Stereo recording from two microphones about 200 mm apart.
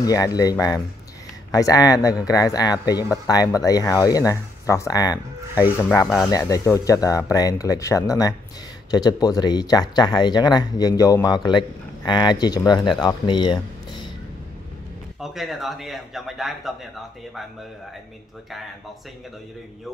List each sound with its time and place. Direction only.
0.0 s speech: 20° left (ahead or behind)
15.1 s a man's voice: centre (ahead or behind)